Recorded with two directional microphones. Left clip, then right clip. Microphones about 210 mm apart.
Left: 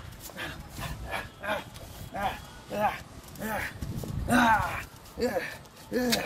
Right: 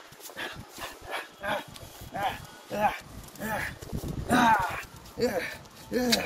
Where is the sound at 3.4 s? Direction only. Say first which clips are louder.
Right 1 dB; 25° left (ahead or behind).